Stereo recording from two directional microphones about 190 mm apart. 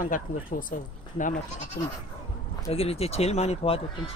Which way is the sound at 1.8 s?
55° left (ahead or behind).